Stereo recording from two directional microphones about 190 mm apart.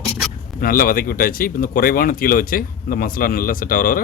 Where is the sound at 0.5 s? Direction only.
50° left (ahead or behind).